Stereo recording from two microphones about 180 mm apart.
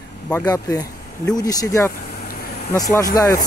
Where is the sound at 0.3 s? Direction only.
20° left (ahead or behind).